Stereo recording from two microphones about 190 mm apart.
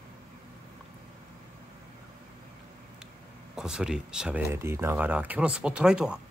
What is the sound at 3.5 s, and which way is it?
Speech, 5° right (ahead or behind).